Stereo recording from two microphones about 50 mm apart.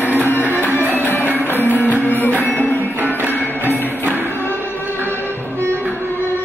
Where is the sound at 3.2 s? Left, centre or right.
Right.